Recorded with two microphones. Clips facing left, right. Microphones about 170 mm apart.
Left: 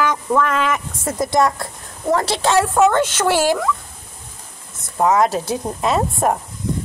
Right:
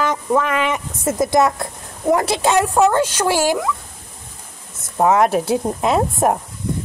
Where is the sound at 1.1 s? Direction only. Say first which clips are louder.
Right 2 dB; 25° right (ahead or behind).